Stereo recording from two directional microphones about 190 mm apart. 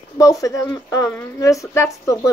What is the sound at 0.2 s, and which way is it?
Speech, 15° left (ahead or behind).